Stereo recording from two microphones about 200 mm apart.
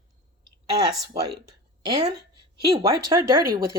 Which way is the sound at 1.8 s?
20° right (ahead or behind).